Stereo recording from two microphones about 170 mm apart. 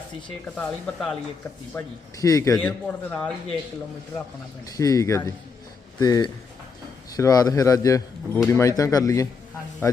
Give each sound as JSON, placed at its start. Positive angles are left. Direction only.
{"t": 0.5, "sound": "speech", "side_deg": 5}
{"t": 1.7, "sound": "a man's voice", "side_deg": 20}
{"t": 2.6, "sound": "speech", "side_deg": 10}
{"t": 4.6, "sound": "a man's voice", "side_deg": 20}